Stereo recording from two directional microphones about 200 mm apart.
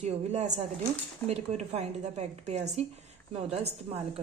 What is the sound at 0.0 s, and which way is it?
A woman's voice, 35° right (ahead or behind).